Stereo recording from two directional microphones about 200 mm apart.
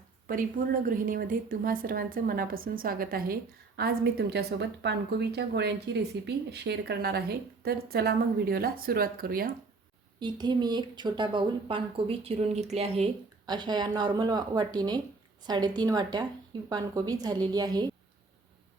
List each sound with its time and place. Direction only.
0.3 s a woman's voice: 45° right (ahead or behind)
10.2 s speech: 20° right (ahead or behind)